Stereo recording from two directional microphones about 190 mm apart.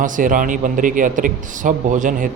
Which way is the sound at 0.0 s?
45° right (ahead or behind).